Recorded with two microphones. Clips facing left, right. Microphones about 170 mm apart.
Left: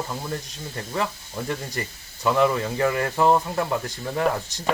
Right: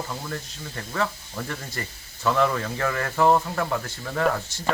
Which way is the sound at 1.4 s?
15° left (ahead or behind).